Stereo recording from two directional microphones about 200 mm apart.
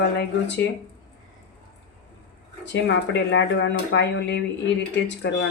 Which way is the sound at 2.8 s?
60° left (ahead or behind).